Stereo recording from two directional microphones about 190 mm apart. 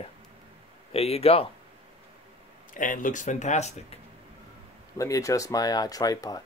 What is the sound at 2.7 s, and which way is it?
Speech, 45° left (ahead or behind).